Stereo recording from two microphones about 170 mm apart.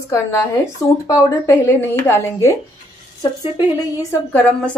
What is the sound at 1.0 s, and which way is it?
Speech, 15° left (ahead or behind).